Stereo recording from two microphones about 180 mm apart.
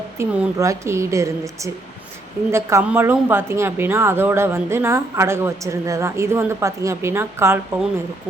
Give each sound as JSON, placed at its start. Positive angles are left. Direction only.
{"t": 0.2, "sound": "speech", "side_deg": -15}